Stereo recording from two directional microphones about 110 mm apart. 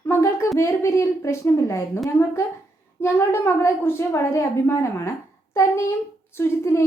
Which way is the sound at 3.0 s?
25° left (ahead or behind).